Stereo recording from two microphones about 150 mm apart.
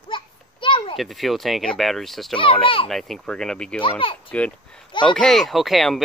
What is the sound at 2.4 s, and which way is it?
Speech, 35° left (ahead or behind).